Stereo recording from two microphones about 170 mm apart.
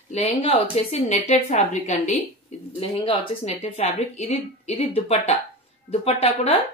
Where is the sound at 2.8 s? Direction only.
30° left (ahead or behind).